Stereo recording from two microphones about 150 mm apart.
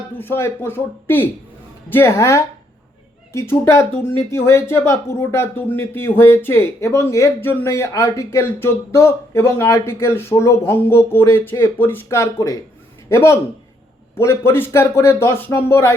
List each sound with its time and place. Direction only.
0.2 s speech: 15° left (ahead or behind)